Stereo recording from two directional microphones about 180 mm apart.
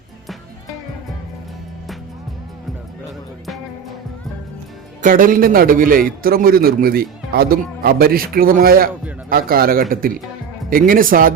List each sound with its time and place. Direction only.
3.4 s music: centre (ahead or behind)
5.0 s a man's voice: 50° right (ahead or behind)